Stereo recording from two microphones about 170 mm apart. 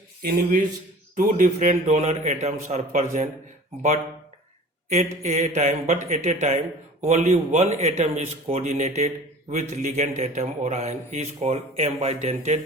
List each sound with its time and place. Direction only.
0.2 s speech: 60° right (ahead or behind)
1.1 s a man's voice: 50° right (ahead or behind)
4.9 s a man's voice: 40° right (ahead or behind)